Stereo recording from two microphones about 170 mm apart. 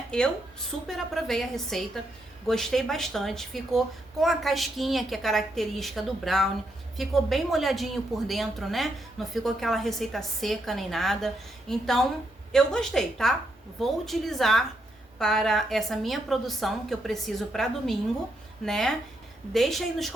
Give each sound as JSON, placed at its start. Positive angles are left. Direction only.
{"t": 0.1, "sound": "speech", "side_deg": 5}